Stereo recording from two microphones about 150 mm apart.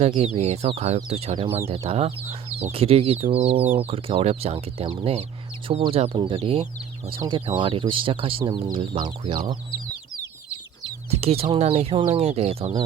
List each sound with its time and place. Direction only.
0.0 s speech: 45° right (ahead or behind)
11.2 s speech: 40° right (ahead or behind)